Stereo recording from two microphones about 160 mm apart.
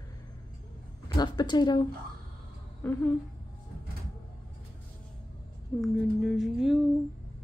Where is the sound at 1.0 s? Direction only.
25° left (ahead or behind).